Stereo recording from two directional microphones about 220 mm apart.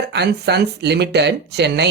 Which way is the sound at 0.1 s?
50° right (ahead or behind).